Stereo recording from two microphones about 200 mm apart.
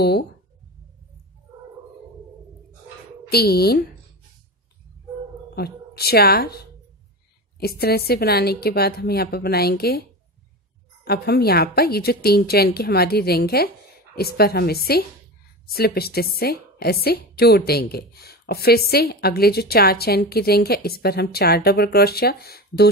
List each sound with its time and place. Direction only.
3.3 s a woman's voice: 50° left (ahead or behind)
5.6 s a woman's voice: 50° left (ahead or behind)
11.1 s a woman's voice: 50° left (ahead or behind)